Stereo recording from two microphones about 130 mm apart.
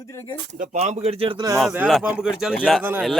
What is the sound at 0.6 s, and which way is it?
Speech, 65° right (ahead or behind).